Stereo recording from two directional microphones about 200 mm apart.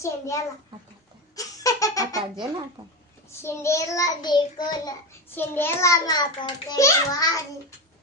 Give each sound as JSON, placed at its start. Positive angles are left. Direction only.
{"t": 0.0, "sound": "child singing", "side_deg": 15}
{"t": 1.3, "sound": "a sound", "side_deg": 15}
{"t": 3.3, "sound": "child singing", "side_deg": 15}